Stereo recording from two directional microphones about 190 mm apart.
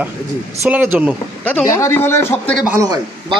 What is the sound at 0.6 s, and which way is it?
Speech, 10° right (ahead or behind).